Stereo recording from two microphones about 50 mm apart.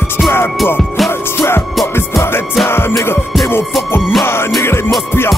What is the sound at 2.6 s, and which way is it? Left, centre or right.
Music, left.